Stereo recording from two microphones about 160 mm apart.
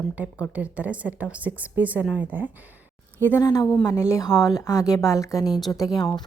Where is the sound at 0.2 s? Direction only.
10° right (ahead or behind).